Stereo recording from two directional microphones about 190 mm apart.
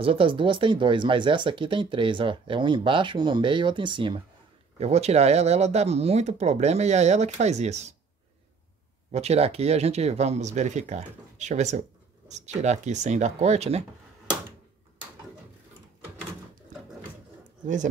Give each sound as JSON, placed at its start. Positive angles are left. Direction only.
{"t": 0.0, "sound": "speech", "side_deg": -30}
{"t": 9.1, "sound": "speech", "side_deg": -35}